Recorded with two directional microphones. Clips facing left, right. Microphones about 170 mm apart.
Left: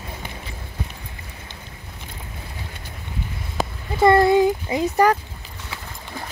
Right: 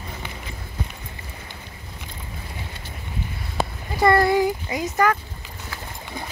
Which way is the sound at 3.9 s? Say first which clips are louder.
Left 3 dB; 20° left (ahead or behind).